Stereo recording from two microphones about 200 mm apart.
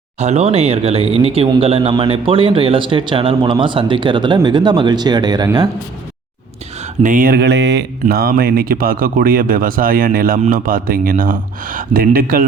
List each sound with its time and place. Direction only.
0.2 s speech: 35° right (ahead or behind)
6.8 s speech: 40° right (ahead or behind)